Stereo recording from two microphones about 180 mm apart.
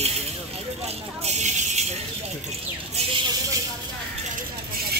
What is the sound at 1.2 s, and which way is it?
Speech, 40° right (ahead or behind).